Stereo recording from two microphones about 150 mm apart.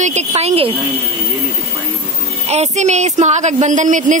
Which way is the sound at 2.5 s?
50° right (ahead or behind).